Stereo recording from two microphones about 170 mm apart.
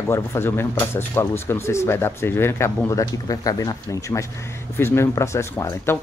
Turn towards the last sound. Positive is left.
turn(degrees=15)  # may be behind; listen again after turning